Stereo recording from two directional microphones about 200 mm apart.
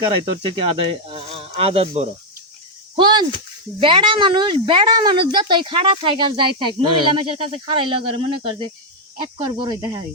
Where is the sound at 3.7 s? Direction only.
25° right (ahead or behind).